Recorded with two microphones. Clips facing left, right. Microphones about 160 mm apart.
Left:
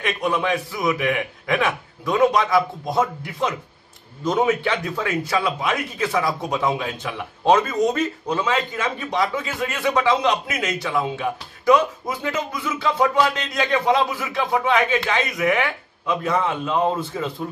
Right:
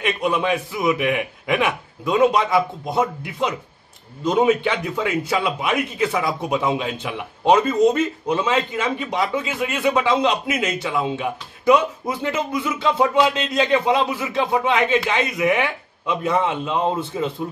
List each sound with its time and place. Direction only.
0.0 s a man's voice: 20° right (ahead or behind)